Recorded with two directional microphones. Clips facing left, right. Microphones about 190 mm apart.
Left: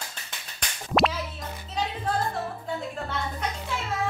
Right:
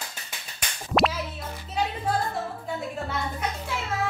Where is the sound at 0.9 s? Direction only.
Centre (ahead or behind).